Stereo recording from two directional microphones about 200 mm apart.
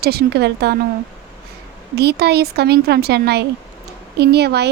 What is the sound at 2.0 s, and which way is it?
A woman's voice, 55° right (ahead or behind).